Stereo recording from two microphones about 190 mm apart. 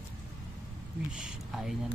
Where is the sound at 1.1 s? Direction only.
5° right (ahead or behind).